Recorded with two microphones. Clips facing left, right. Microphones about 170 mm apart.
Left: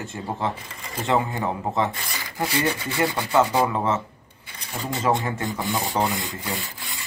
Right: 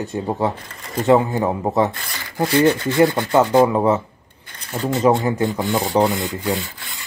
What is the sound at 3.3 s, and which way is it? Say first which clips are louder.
Speech: right 6 dB; 15° right (ahead or behind).